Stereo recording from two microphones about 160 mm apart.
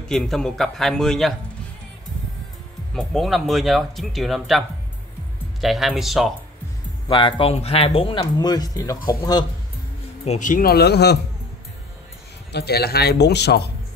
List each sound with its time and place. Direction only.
0.1 s speech: 5° left (ahead or behind)
2.9 s speech: 5° left (ahead or behind)
7.1 s speech: 30° left (ahead or behind)
10.2 s speech: 50° left (ahead or behind); by 11.1 s 90° left
12.5 s speech: 85° left